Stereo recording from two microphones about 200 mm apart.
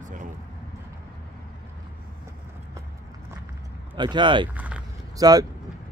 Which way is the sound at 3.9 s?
25° right (ahead or behind).